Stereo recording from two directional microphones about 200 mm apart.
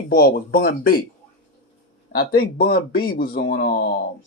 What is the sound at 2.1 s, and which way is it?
Speech, 50° left (ahead or behind).